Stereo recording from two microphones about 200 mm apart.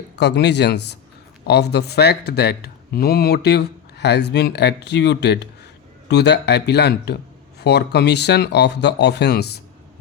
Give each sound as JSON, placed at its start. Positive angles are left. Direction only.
{"t": 0.2, "sound": "speech", "side_deg": 60}